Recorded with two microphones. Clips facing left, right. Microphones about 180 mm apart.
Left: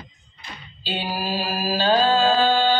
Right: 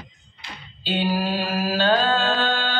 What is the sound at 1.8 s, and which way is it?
Music, 55° right (ahead or behind).